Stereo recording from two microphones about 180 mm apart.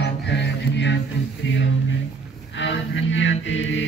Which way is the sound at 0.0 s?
75° left (ahead or behind).